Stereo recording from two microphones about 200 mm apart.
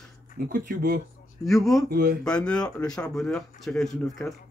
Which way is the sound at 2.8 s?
20° left (ahead or behind).